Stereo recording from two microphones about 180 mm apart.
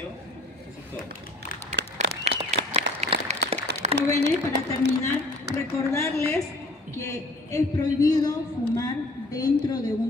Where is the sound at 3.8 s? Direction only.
40° right (ahead or behind).